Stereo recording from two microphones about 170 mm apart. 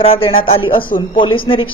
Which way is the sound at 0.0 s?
30° left (ahead or behind).